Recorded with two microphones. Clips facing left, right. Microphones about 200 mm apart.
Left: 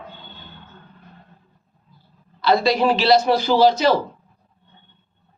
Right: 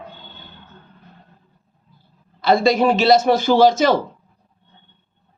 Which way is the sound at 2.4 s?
50° right (ahead or behind).